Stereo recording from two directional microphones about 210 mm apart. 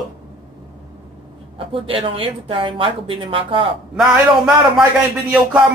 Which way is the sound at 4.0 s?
Centre (ahead or behind).